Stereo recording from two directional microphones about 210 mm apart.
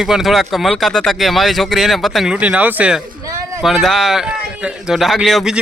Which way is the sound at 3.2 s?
15° right (ahead or behind).